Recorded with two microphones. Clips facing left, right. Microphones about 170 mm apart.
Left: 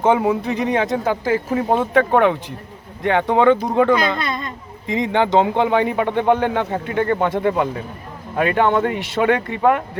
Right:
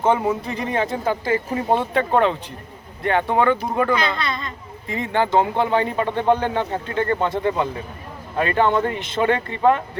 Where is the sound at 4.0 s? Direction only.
50° left (ahead or behind).